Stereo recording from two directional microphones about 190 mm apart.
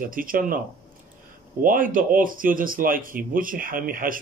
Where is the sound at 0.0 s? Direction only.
45° right (ahead or behind).